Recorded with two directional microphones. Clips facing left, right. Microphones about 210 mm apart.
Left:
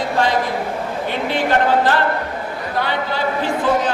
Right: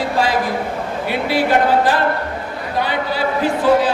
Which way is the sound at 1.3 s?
10° right (ahead or behind).